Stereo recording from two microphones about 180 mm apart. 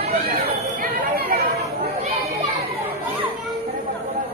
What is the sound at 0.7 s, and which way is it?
Chatter, 55° right (ahead or behind).